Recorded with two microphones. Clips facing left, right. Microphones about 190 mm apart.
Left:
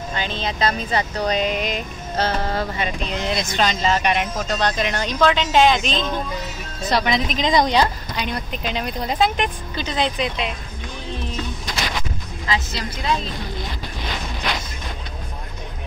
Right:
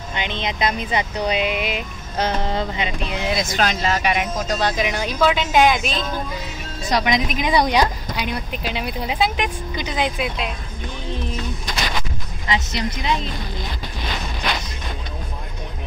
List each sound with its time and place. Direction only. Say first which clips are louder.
0.4 s speech: even; 15° right (ahead or behind)
12.4 s a woman's voice: right 2 dB; 20° right (ahead or behind)